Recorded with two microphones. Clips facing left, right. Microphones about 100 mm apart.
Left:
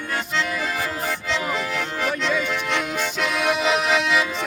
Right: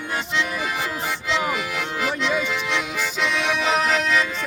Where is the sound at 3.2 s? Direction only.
5° left (ahead or behind).